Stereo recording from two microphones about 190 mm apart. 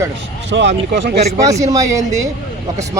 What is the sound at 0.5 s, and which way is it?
Speech, 65° right (ahead or behind).